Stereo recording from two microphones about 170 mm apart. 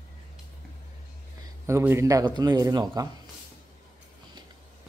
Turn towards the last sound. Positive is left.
turn(degrees=-20)  # may be behind; listen again after turning